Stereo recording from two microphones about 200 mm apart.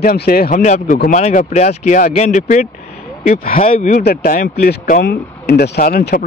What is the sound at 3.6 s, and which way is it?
Speech, 30° left (ahead or behind).